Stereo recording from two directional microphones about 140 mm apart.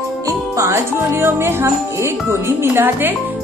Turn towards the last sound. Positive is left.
turn(degrees=-15)  # may be behind; listen again after turning